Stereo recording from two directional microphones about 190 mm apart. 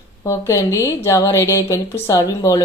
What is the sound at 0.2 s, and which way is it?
A woman's voice, 15° left (ahead or behind).